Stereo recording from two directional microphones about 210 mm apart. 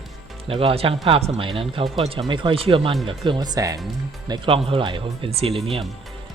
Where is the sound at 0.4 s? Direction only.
25° right (ahead or behind).